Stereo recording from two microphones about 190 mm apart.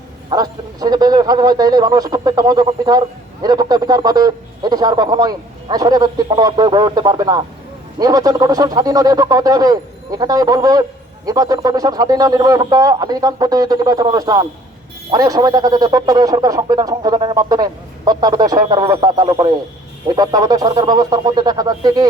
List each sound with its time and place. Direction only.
0.3 s a man's voice: 20° right (ahead or behind)